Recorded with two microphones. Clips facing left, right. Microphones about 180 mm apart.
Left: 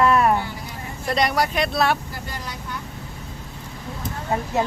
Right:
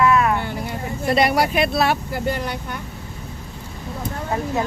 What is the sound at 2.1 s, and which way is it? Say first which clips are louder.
Speech: right 10 dB; 65° right (ahead or behind).